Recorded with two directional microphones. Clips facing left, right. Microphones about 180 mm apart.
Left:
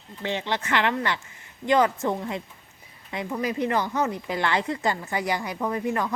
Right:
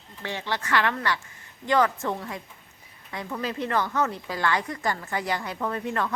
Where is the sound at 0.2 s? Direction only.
20° left (ahead or behind).